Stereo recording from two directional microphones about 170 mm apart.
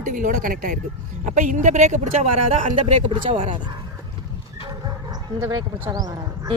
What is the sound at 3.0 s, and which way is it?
Speech, 35° right (ahead or behind).